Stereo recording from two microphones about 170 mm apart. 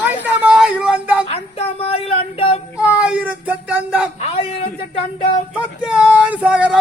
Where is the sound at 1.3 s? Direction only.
35° left (ahead or behind).